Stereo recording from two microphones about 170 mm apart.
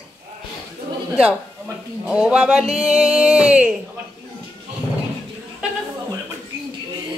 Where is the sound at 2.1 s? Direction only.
5° right (ahead or behind).